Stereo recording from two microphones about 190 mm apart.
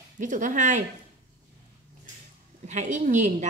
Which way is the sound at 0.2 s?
40° right (ahead or behind).